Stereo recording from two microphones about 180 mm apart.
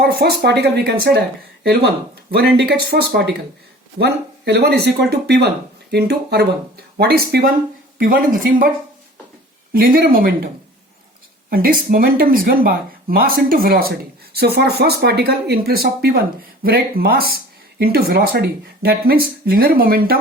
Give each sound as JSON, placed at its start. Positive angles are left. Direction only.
{"t": 0.0, "sound": "speech", "side_deg": -60}
{"t": 9.7, "sound": "speech", "side_deg": -55}